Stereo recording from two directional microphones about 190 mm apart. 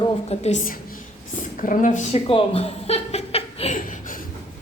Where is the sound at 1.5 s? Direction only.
45° left (ahead or behind).